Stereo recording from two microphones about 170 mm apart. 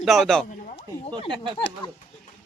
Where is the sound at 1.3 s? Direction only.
30° right (ahead or behind).